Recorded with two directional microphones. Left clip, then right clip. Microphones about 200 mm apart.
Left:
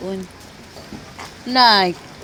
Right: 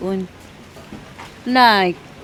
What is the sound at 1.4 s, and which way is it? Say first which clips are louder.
Speech: even; 20° right (ahead or behind).